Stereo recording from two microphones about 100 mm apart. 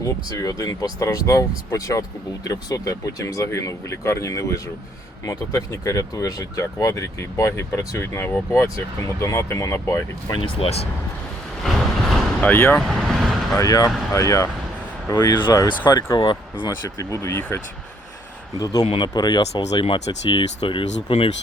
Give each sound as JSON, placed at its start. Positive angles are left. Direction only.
{"t": 0.0, "sound": "speech", "side_deg": 35}
{"t": 10.4, "sound": "speech", "side_deg": 85}
{"t": 11.6, "sound": "vehicle", "side_deg": 0}
{"t": 12.4, "sound": "speech", "side_deg": 20}
{"t": 12.8, "sound": "speech", "side_deg": 0}
{"t": 13.6, "sound": "speech", "side_deg": 35}
{"t": 15.3, "sound": "speech", "side_deg": 45}
{"t": 16.6, "sound": "speech", "side_deg": 30}
{"t": 18.6, "sound": "speech", "side_deg": 40}